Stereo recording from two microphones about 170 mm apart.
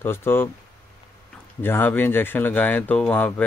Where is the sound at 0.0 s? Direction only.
15° left (ahead or behind).